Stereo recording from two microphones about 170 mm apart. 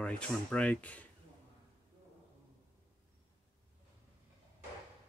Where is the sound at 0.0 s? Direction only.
5° left (ahead or behind).